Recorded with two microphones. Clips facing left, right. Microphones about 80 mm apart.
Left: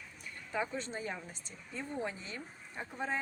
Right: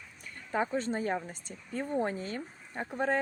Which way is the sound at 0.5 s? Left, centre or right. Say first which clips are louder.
Right 7 dB; right.